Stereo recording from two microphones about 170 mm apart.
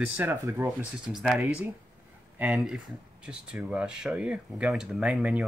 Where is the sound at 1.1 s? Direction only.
Centre (ahead or behind).